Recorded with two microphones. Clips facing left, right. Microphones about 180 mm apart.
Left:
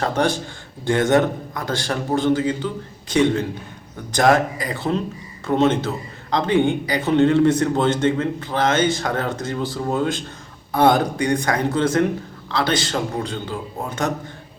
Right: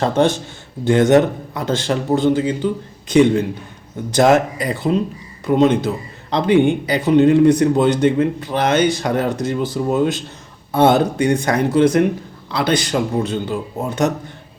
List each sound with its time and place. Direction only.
0.0 s a man's voice: 25° right (ahead or behind)